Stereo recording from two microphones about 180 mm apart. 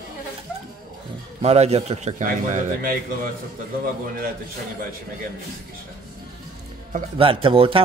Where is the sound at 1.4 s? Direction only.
35° right (ahead or behind).